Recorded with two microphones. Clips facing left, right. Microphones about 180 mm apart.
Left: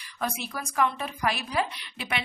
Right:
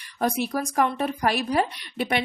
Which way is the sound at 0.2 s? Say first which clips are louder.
Right 8 dB; 40° right (ahead or behind).